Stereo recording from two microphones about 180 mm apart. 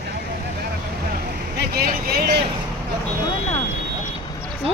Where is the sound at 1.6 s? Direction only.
55° right (ahead or behind).